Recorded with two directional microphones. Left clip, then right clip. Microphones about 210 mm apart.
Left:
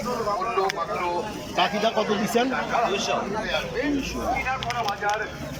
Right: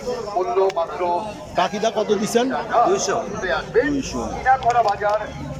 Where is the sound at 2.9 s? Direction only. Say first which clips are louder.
Right 4 dB; 60° right (ahead or behind).